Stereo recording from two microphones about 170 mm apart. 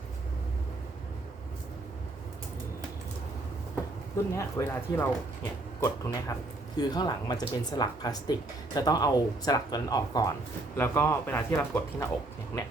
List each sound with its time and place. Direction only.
4.4 s speech: 15° left (ahead or behind)
10.8 s speech: 10° left (ahead or behind)